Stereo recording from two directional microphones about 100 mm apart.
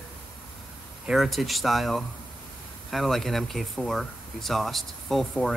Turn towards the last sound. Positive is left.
turn(degrees=5)  # may be behind; listen again after turning